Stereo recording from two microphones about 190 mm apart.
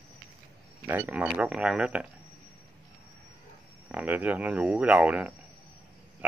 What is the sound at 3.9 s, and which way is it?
Speech, 10° right (ahead or behind).